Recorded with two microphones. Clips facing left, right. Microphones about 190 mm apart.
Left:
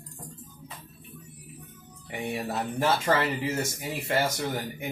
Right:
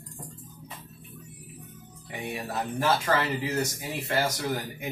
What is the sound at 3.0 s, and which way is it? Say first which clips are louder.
Speech: left 1 dB; 25° left (ahead or behind).